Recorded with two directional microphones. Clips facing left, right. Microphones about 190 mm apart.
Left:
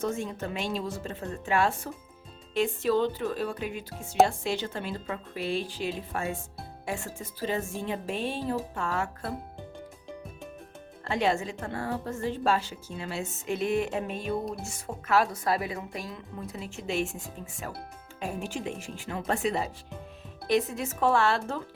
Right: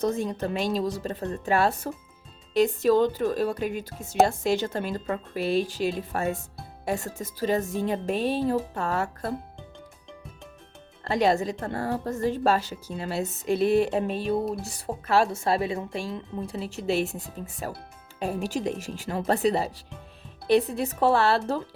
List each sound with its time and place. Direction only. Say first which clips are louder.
0.0 s a woman's voice: right 5 dB; 35° right (ahead or behind)
11.0 s a woman's voice: right 4 dB; 40° right (ahead or behind)